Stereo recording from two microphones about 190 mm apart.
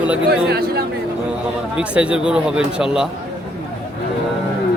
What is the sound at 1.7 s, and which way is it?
Speech, 5° right (ahead or behind).